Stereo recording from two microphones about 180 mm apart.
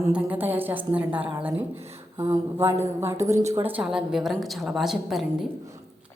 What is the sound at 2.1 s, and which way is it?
A woman's voice, 20° right (ahead or behind).